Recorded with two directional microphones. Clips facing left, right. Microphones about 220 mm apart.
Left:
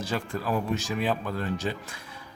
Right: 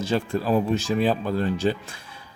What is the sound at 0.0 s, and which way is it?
Speech, 25° right (ahead or behind).